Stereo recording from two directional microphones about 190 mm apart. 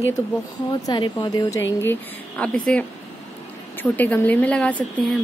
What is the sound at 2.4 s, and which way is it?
A woman's voice, 5° left (ahead or behind).